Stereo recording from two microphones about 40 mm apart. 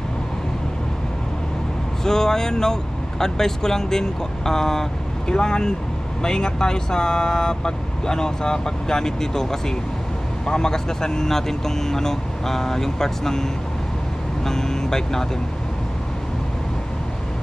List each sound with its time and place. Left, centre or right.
2.0 s speech: centre